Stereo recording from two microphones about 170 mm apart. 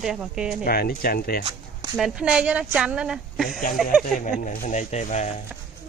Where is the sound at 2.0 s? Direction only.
5° right (ahead or behind).